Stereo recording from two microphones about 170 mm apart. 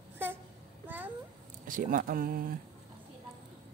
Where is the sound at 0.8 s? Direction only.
10° right (ahead or behind).